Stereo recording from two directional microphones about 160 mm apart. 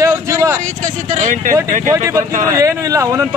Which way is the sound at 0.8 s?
50° right (ahead or behind).